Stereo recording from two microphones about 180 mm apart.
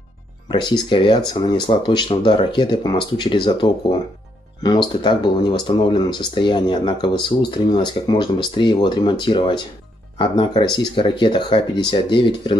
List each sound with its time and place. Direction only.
0.5 s speech: 25° left (ahead or behind)